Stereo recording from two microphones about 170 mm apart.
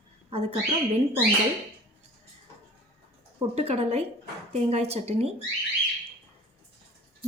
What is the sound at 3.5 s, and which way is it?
A woman's voice, 35° right (ahead or behind).